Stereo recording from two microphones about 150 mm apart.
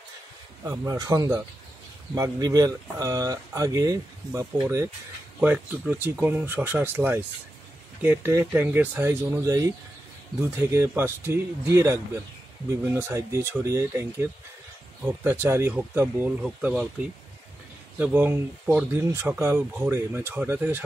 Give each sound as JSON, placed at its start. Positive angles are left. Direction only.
{"t": 0.7, "sound": "speech", "side_deg": -25}